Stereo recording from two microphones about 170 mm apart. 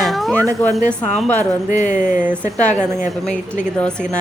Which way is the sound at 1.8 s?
50° left (ahead or behind).